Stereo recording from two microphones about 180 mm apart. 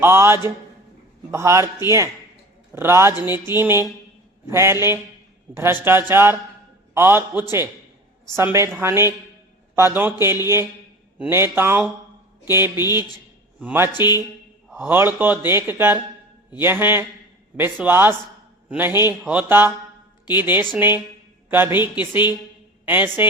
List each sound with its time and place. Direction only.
0.0 s speech: 15° right (ahead or behind)
2.7 s speech: 15° right (ahead or behind)